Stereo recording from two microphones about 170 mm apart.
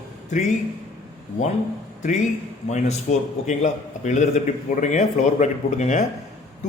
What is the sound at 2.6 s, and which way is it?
A man's voice, 45° left (ahead or behind).